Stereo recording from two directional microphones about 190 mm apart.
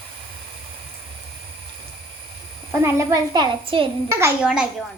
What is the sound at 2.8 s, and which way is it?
A child's voice, 15° right (ahead or behind).